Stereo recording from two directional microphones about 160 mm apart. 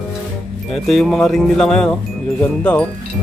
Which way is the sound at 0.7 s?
Centre (ahead or behind).